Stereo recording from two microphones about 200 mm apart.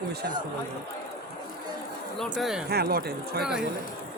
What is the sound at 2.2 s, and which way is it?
Speech, centre (ahead or behind).